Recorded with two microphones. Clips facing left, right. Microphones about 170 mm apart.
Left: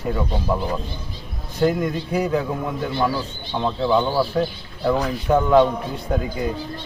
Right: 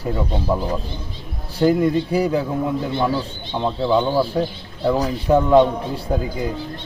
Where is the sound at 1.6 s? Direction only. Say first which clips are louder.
Right 4 dB; 30° right (ahead or behind); by 5.0 s 15° right (ahead or behind).